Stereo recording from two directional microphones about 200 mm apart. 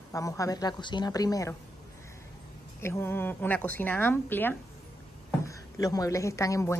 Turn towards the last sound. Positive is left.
turn(degrees=15)  # may be behind; listen again after turning